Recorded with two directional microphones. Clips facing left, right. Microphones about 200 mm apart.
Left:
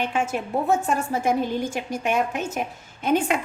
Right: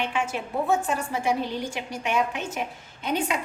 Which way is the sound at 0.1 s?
40° left (ahead or behind).